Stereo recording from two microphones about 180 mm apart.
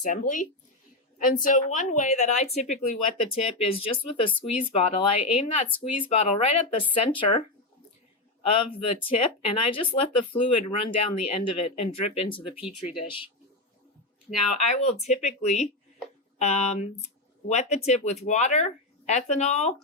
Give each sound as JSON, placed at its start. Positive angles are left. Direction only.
{"t": 0.0, "sound": "speech", "side_deg": 45}
{"t": 8.4, "sound": "speech", "side_deg": 30}
{"t": 14.8, "sound": "speech", "side_deg": 40}